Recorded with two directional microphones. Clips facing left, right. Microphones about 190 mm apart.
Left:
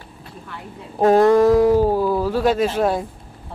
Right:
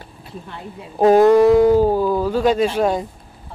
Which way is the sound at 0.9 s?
Centre (ahead or behind).